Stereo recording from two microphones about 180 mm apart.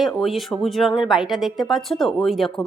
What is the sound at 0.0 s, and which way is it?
Speech, centre (ahead or behind).